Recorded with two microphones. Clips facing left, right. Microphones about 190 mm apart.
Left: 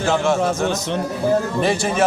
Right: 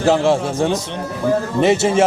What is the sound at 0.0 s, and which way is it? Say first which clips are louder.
A man's voice: right 3 dB; 35° right (ahead or behind).